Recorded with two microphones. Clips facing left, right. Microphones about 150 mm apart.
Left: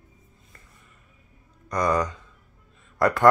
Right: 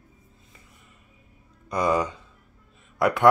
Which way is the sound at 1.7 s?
10° right (ahead or behind).